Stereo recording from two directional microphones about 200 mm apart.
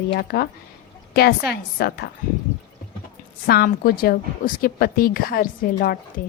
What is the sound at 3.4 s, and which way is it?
Speech, 50° left (ahead or behind).